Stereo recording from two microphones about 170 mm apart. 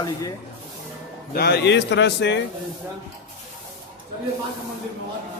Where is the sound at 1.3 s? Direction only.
70° left (ahead or behind); by 2.4 s 90° left.